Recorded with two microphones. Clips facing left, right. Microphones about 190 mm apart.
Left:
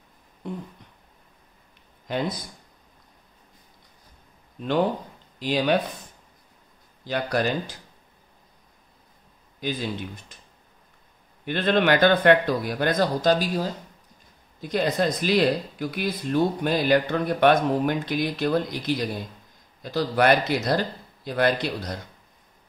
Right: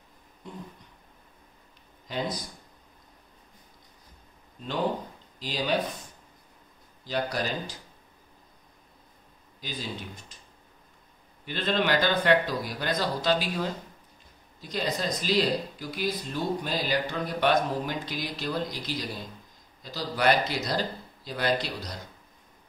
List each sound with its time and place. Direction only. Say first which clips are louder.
2.1 s speech: left 5 dB; 60° left (ahead or behind)
5.4 s speech: left 6 dB; 60° left (ahead or behind)
7.1 s speech: left 5 dB; 60° left (ahead or behind)
9.6 s speech: left 11 dB; 60° left (ahead or behind)
10.3 s a sound: left 2 dB; 55° left (ahead or behind)
11.4 s speech: left 6 dB; 60° left (ahead or behind); by 13.7 s 45° left (ahead or behind)
14.6 s speech: left 7 dB; 55° left (ahead or behind)